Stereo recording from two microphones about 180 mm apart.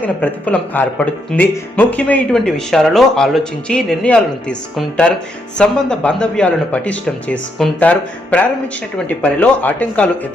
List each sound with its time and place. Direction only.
0.0 s speech: 10° left (ahead or behind)